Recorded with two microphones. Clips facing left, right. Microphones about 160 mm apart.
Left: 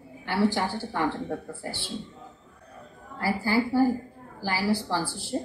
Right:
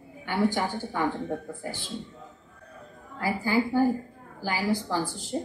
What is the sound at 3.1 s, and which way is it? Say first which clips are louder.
A woman's voice: even; 20° right (ahead or behind).